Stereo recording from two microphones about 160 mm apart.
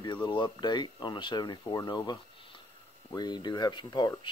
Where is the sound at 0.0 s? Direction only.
30° left (ahead or behind).